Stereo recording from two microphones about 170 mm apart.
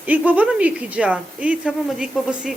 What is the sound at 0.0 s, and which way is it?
Speech, 10° right (ahead or behind).